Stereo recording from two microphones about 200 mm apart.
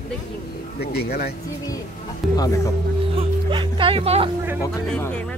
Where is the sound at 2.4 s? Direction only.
15° left (ahead or behind).